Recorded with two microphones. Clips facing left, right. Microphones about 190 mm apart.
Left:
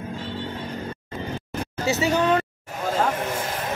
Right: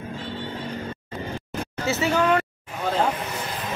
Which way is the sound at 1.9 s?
15° left (ahead or behind).